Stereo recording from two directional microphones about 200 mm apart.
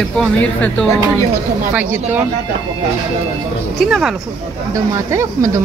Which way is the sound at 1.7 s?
10° right (ahead or behind).